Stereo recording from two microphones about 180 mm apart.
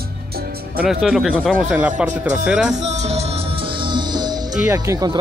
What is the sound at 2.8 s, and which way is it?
Music, 40° right (ahead or behind).